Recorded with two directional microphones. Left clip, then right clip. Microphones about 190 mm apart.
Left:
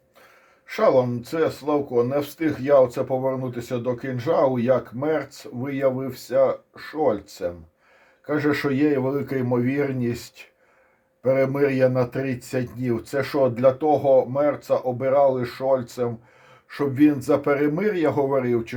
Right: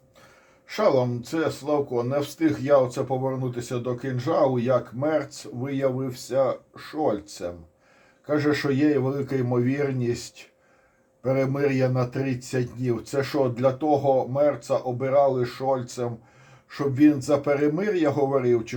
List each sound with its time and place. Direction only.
0.7 s speech: 35° left (ahead or behind)